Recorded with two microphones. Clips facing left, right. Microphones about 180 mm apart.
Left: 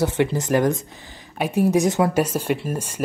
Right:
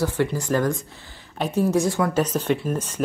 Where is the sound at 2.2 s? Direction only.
10° left (ahead or behind).